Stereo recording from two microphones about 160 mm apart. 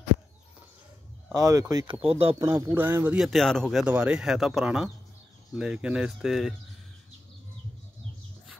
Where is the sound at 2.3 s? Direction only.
20° right (ahead or behind); by 6.5 s centre (ahead or behind).